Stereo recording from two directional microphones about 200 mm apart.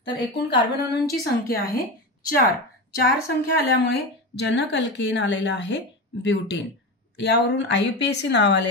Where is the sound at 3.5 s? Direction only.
55° left (ahead or behind).